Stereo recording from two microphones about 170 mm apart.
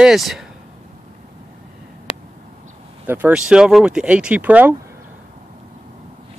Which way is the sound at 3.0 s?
10° right (ahead or behind).